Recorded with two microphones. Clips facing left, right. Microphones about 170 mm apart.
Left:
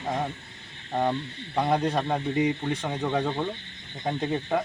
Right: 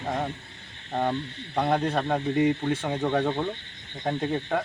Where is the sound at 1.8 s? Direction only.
Centre (ahead or behind).